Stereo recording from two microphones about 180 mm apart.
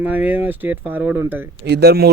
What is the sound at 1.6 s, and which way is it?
Speech, 65° right (ahead or behind).